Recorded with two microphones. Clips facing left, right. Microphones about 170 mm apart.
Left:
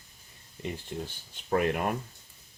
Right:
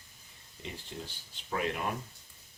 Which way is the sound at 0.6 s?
55° left (ahead or behind).